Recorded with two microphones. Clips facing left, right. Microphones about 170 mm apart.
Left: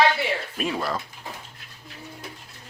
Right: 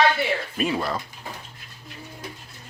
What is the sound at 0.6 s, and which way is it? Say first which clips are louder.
Speech: right 3 dB; centre (ahead or behind).